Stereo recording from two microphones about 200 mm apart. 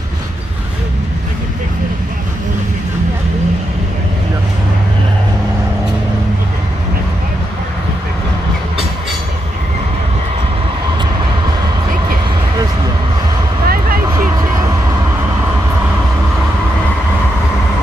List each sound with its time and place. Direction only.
13.7 s vehicle: 45° right (ahead or behind)
14.1 s vehicle: 15° right (ahead or behind)